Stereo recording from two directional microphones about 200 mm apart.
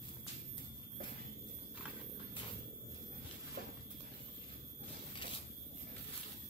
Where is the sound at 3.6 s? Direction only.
50° right (ahead or behind).